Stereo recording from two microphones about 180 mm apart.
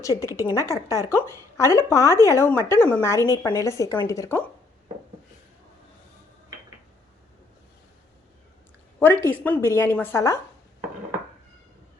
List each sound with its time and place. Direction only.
0.0 s a woman's voice: 20° left (ahead or behind)
9.0 s a woman's voice: 10° left (ahead or behind)